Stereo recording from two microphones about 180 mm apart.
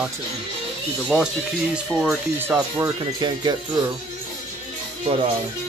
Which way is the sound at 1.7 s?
Centre (ahead or behind).